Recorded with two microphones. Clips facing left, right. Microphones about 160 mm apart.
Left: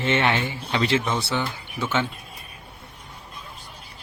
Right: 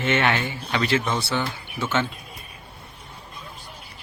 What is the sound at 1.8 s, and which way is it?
Speech, 15° left (ahead or behind).